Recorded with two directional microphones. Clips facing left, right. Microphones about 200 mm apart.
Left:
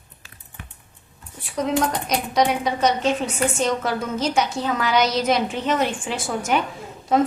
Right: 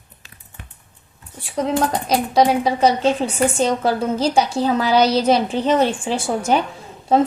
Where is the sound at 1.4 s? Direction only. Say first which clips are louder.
Right 2 dB; 30° right (ahead or behind).